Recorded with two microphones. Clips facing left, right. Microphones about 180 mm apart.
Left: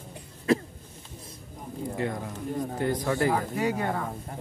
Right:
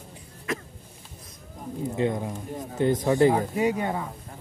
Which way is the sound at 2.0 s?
20° right (ahead or behind).